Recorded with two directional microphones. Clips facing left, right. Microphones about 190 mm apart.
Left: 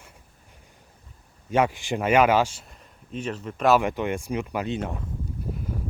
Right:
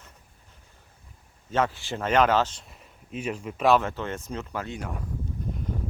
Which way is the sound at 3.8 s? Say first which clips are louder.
Left 5 dB; 15° left (ahead or behind).